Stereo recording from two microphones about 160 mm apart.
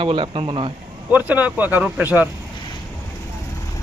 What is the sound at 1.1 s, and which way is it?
Speech, 10° right (ahead or behind).